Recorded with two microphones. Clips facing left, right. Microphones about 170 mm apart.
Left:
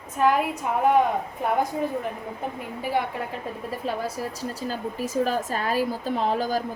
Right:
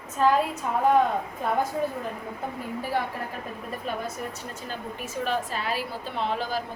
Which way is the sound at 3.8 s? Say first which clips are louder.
Left 3 dB; 30° left (ahead or behind).